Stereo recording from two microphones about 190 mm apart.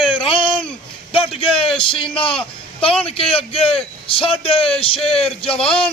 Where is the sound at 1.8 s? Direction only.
25° left (ahead or behind).